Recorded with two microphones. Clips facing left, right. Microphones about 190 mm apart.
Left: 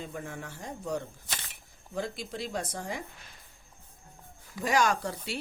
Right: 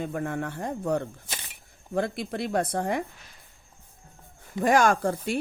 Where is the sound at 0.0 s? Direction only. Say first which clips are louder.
Right 9 dB; 60° right (ahead or behind).